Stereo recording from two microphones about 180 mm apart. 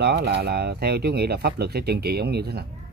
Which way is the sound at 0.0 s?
65° right (ahead or behind).